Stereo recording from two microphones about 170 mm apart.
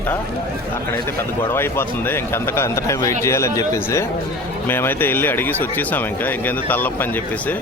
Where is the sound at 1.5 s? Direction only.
15° left (ahead or behind).